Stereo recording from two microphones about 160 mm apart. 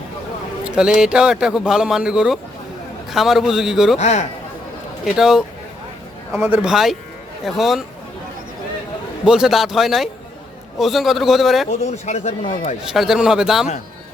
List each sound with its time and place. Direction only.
0.8 s speech: 5° right (ahead or behind)
3.9 s speech: 45° left (ahead or behind)
5.0 s speech: 5° right (ahead or behind)
9.2 s speech: 5° right (ahead or behind)
11.7 s speech: 45° left (ahead or behind)
12.9 s speech: 5° right (ahead or behind)